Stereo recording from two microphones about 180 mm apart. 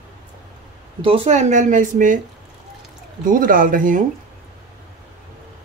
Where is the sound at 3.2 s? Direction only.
50° right (ahead or behind).